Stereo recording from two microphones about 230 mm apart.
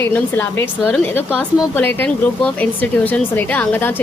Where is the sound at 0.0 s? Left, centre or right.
Centre.